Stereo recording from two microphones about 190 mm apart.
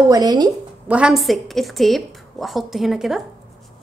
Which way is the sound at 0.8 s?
5° right (ahead or behind).